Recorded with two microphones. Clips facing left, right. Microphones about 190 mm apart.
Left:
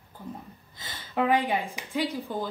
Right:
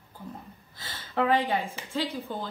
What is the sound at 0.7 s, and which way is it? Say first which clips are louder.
Speech: even; 15° left (ahead or behind).